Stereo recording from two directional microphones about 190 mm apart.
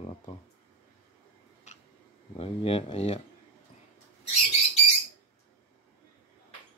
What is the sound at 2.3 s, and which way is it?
Speech, 30° left (ahead or behind).